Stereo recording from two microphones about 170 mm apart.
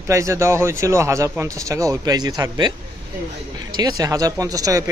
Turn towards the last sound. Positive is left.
turn(degrees=-20)  # may be behind; listen again after turning